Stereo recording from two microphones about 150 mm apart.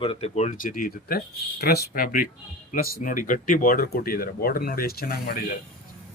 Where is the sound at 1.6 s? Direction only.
90° left.